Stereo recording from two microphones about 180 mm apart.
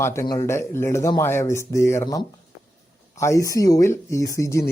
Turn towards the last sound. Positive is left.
turn(degrees=15)  # may be behind; listen again after turning